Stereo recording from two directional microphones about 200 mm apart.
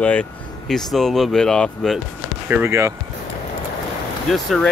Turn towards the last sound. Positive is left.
turn(degrees=0)  # may be behind; listen again after turning